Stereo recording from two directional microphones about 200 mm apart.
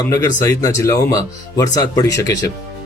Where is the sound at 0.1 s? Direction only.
20° left (ahead or behind).